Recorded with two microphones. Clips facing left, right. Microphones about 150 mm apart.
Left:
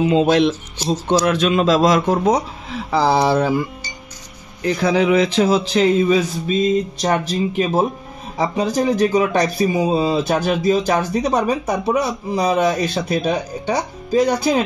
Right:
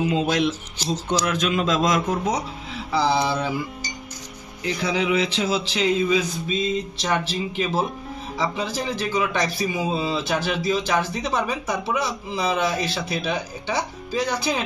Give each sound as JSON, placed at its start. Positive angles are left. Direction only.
{"t": 0.0, "sound": "speech", "side_deg": 25}
{"t": 0.3, "sound": "speech", "side_deg": 70}
{"t": 2.2, "sound": "speech", "side_deg": 50}
{"t": 3.3, "sound": "speech", "side_deg": 50}
{"t": 4.6, "sound": "speech", "side_deg": 45}